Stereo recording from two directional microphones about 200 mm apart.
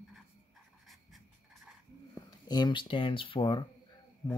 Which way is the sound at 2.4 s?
20° left (ahead or behind).